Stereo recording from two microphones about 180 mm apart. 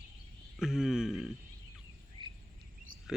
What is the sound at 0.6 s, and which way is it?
Speech, centre (ahead or behind).